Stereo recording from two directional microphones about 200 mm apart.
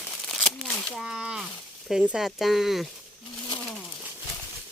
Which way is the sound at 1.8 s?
5° right (ahead or behind).